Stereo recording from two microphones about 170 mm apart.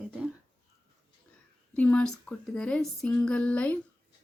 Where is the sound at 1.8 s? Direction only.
5° left (ahead or behind).